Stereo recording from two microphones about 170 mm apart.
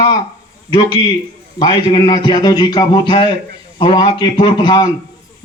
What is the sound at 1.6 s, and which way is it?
A man's voice, 25° left (ahead or behind).